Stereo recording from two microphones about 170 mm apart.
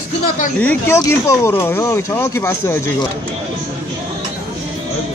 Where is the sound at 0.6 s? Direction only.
10° left (ahead or behind).